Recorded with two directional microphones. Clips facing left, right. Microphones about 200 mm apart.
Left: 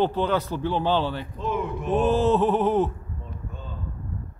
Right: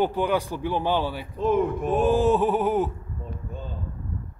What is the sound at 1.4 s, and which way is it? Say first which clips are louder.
Speech: right 7 dB; 50° right (ahead or behind).